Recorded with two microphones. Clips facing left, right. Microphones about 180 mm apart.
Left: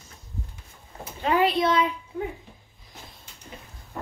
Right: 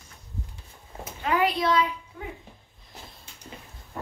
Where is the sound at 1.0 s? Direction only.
30° left (ahead or behind).